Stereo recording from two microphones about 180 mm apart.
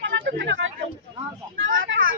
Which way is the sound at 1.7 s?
90° right.